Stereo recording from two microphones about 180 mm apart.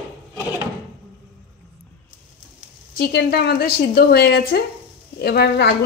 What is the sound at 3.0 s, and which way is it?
A woman's voice, 65° left (ahead or behind).